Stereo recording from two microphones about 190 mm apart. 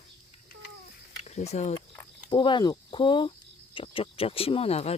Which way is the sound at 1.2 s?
35° left (ahead or behind).